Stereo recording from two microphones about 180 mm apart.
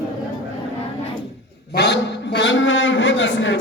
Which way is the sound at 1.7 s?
70° left (ahead or behind).